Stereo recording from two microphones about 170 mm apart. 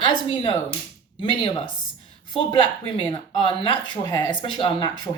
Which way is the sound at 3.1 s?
25° left (ahead or behind).